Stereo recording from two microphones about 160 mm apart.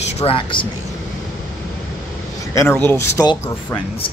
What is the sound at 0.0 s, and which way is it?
Speech, 40° left (ahead or behind).